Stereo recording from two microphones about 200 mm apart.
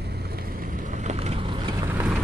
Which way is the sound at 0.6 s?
45° right (ahead or behind).